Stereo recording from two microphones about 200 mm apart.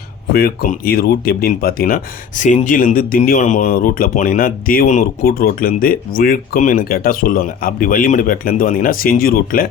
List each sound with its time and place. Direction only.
0.3 s speech: 50° left (ahead or behind)